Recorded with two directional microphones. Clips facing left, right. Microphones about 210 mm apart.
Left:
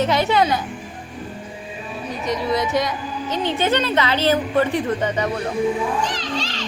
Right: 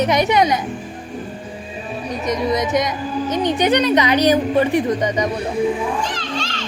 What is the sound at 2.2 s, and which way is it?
Speech, 20° right (ahead or behind).